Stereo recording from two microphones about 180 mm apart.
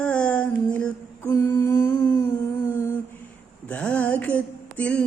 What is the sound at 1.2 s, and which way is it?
Humming, 15° left (ahead or behind).